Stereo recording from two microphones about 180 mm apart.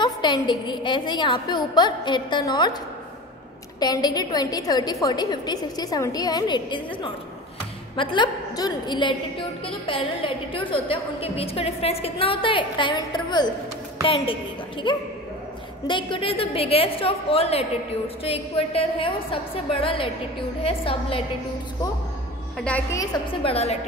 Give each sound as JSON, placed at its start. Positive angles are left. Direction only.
{"t": 0.0, "sound": "a woman's voice", "side_deg": 25}
{"t": 3.8, "sound": "a woman's voice", "side_deg": 20}
{"t": 22.6, "sound": "a woman's voice", "side_deg": 10}
{"t": 23.4, "sound": "a woman's voice", "side_deg": 35}